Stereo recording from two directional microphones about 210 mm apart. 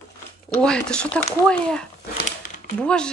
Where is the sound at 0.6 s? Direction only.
5° left (ahead or behind).